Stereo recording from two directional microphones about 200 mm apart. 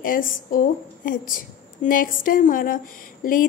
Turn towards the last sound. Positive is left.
turn(degrees=45)  # may be behind; listen again after turning